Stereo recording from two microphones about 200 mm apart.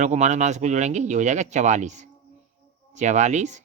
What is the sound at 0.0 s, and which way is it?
A man's voice, 35° right (ahead or behind).